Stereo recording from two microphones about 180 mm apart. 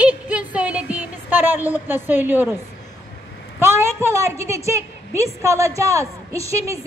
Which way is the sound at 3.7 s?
15° right (ahead or behind).